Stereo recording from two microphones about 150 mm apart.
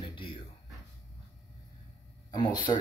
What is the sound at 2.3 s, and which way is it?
Speech, 30° left (ahead or behind).